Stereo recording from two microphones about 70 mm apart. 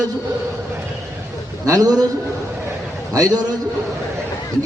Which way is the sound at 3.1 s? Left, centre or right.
Right.